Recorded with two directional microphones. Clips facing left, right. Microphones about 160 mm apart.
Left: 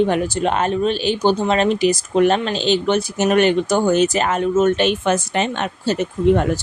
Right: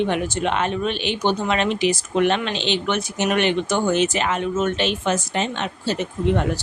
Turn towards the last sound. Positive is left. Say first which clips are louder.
# left 5 dB
turn(degrees=45)  # may be behind; listen again after turning